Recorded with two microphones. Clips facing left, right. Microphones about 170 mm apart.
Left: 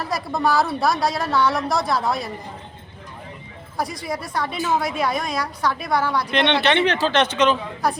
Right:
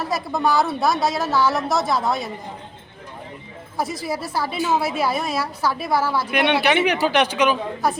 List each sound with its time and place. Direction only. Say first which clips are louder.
0.0 s a woman's voice: right 1 dB; centre (ahead or behind)
3.8 s a woman's voice: right 1 dB; 5° right (ahead or behind)